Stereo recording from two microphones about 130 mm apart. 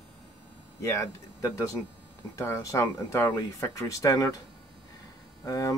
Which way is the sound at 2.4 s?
25° left (ahead or behind).